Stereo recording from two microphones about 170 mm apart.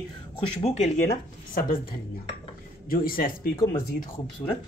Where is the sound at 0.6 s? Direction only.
40° left (ahead or behind).